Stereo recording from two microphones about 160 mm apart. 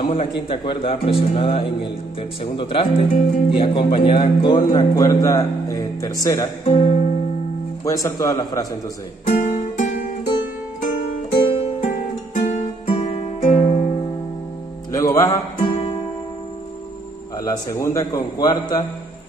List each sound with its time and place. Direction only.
0.0 s a man's voice: 40° left (ahead or behind); by 6.5 s 20° left (ahead or behind)
6.6 s speech: 40° left (ahead or behind)
7.8 s speech: 20° left (ahead or behind)
9.2 s music: 50° left (ahead or behind)
12.4 s music: 50° left (ahead or behind)
12.8 s music: 35° left (ahead or behind)
14.9 s music: 20° left (ahead or behind)
17.4 s speech: 20° left (ahead or behind)